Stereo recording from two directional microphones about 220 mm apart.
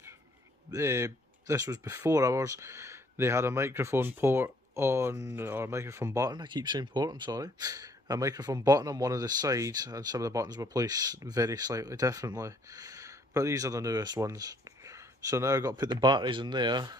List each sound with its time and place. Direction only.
0.7 s speech: 15° right (ahead or behind)